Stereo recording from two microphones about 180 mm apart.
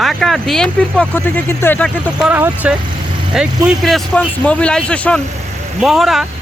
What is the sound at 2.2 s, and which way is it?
Speech, 10° right (ahead or behind).